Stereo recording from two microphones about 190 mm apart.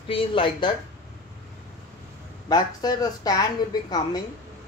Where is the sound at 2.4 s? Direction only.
20° left (ahead or behind).